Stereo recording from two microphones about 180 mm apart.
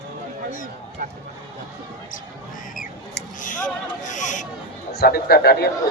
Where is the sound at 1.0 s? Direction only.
50° right (ahead or behind).